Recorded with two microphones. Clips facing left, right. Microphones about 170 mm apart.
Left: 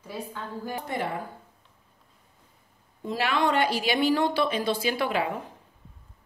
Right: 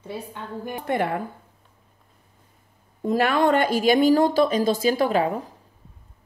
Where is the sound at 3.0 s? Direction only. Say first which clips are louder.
Right 6 dB; 50° right (ahead or behind).